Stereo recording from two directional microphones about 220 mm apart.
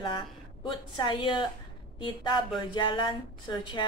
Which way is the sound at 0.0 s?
20° left (ahead or behind).